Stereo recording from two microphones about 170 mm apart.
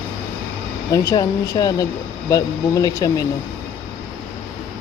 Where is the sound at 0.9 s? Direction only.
20° left (ahead or behind).